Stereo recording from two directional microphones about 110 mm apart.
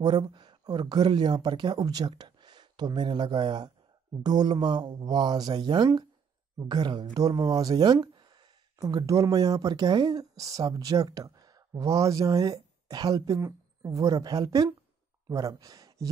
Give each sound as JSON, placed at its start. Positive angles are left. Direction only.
{"t": 0.0, "sound": "speech", "side_deg": -45}